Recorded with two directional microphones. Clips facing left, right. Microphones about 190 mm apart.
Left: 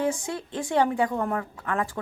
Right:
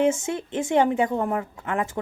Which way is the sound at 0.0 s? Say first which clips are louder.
Right 5 dB; 25° right (ahead or behind).